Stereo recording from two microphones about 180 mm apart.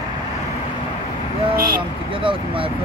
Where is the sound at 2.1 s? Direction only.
30° right (ahead or behind).